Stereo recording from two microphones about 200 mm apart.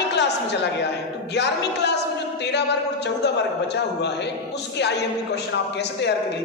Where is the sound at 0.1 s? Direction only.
60° left (ahead or behind).